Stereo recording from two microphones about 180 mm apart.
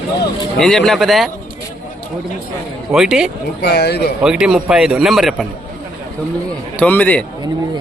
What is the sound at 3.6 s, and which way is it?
Speech, 65° left (ahead or behind).